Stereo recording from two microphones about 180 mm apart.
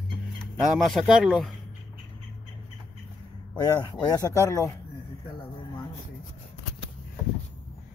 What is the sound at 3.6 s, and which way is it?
Speech, 20° left (ahead or behind).